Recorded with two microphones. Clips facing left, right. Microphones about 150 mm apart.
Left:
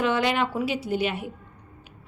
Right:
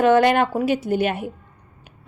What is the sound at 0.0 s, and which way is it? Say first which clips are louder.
A woman's voice: right 8 dB; 50° right (ahead or behind).